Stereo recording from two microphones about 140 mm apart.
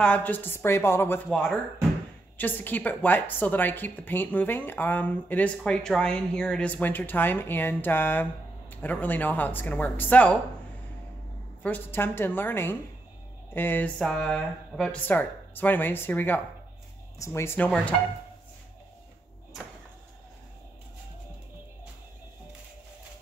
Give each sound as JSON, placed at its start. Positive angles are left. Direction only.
{"t": 0.0, "sound": "a woman's voice", "side_deg": 10}
{"t": 11.6, "sound": "a woman's voice", "side_deg": 15}